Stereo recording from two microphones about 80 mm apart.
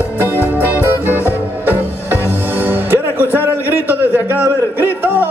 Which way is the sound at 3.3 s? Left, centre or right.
Right.